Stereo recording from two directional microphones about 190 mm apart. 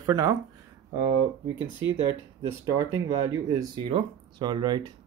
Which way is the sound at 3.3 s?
20° right (ahead or behind).